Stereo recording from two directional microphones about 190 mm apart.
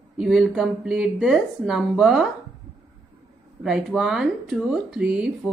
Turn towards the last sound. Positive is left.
turn(degrees=-5)  # may be behind; listen again after turning